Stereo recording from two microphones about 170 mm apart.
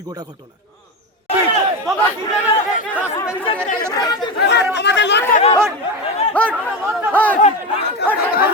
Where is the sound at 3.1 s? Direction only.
15° left (ahead or behind).